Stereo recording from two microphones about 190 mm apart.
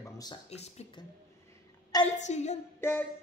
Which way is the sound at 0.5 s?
35° left (ahead or behind).